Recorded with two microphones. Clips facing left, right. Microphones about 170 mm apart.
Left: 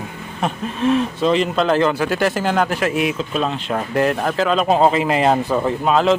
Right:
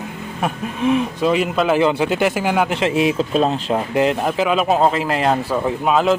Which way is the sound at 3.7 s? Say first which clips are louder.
Right 1 dB; 15° right (ahead or behind).